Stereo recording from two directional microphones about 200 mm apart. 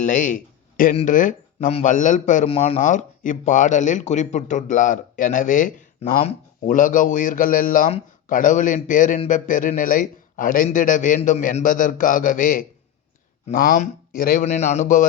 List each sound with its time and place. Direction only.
0.0 s a man's voice: 40° left (ahead or behind)
13.7 s speech: 45° left (ahead or behind)
14.4 s a man's voice: 35° left (ahead or behind)